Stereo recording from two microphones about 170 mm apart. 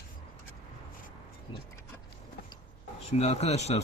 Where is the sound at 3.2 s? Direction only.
40° left (ahead or behind).